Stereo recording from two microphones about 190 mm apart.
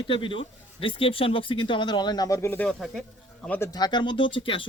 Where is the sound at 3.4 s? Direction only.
10° left (ahead or behind); by 4.6 s 25° left (ahead or behind).